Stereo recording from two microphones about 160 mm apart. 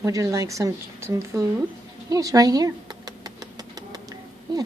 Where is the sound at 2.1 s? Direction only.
20° right (ahead or behind).